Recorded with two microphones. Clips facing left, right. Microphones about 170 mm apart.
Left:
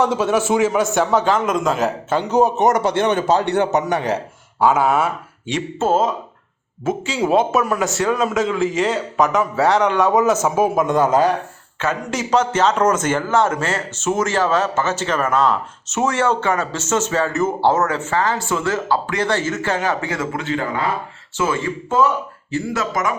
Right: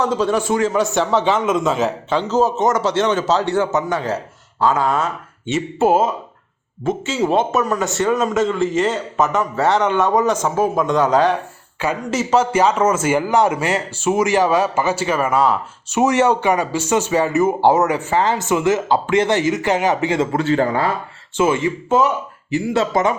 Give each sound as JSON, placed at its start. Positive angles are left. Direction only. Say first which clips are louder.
{"t": 0.0, "sound": "speech", "louder": "left 1 dB", "side_deg": 10}
{"t": 2.4, "sound": "a man's voice", "louder": "left 2 dB", "side_deg": 60}
{"t": 4.6, "sound": "speech", "louder": "left 2 dB", "side_deg": 5}
{"t": 5.8, "sound": "a man's voice", "louder": "right 2 dB", "side_deg": -10}
{"t": 6.8, "sound": "speech", "louder": "right 1 dB", "side_deg": 0}
{"t": 11.8, "sound": "a man's voice", "louder": "right 2 dB", "side_deg": -10}
{"t": 20.3, "sound": "a man's voice", "louder": "right 6 dB", "side_deg": -35}
{"t": 21.3, "sound": "speech", "louder": "right 4 dB", "side_deg": -20}
{"t": 22.7, "sound": "speech", "louder": "right 6 dB", "side_deg": -30}